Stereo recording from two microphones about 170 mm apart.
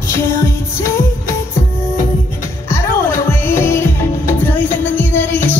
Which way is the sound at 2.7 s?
15° left (ahead or behind).